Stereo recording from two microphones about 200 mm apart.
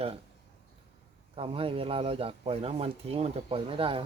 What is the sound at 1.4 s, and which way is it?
Speech, 30° right (ahead or behind).